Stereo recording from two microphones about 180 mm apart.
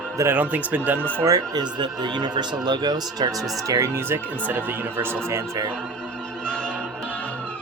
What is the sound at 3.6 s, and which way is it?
Speech, 15° right (ahead or behind).